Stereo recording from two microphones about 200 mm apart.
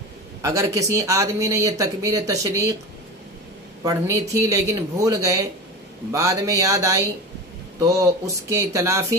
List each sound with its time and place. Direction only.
0.4 s speech: 15° right (ahead or behind)
3.8 s speech: 15° right (ahead or behind)